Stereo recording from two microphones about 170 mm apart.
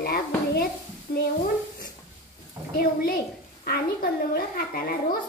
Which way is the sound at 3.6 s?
60° left (ahead or behind).